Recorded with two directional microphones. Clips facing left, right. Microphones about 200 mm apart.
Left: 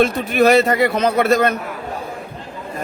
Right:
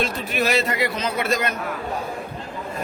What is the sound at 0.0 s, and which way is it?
A man's voice, 55° left (ahead or behind).